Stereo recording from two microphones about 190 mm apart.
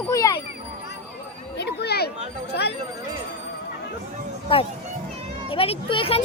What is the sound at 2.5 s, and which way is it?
Chatter, 60° left (ahead or behind).